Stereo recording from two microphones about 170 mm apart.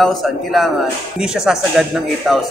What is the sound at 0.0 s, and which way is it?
Speech, centre (ahead or behind).